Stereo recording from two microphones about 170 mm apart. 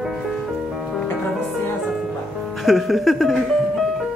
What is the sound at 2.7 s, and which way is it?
Speech, centre (ahead or behind).